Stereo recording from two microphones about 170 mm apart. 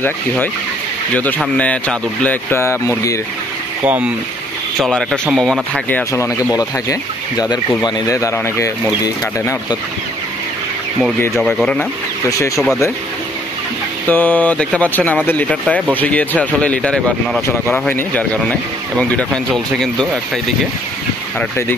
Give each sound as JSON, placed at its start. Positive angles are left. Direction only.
{"t": 1.4, "sound": "speech", "side_deg": 5}
{"t": 3.8, "sound": "speech", "side_deg": -10}
{"t": 4.7, "sound": "speech", "side_deg": 0}
{"t": 11.3, "sound": "speech", "side_deg": 5}
{"t": 14.0, "sound": "speech", "side_deg": 10}
{"t": 21.4, "sound": "speech", "side_deg": 10}